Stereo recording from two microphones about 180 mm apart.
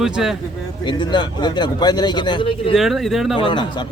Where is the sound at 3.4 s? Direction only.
25° left (ahead or behind).